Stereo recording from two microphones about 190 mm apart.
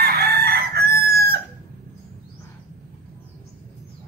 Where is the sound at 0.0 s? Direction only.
55° right (ahead or behind).